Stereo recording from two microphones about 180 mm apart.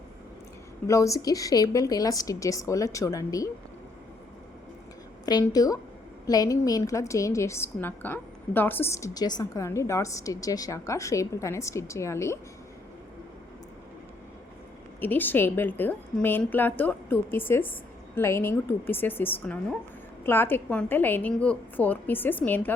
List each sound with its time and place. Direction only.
0.9 s a woman's voice: 15° left (ahead or behind)
5.2 s a woman's voice: 20° left (ahead or behind)
15.0 s a woman's voice: 10° left (ahead or behind)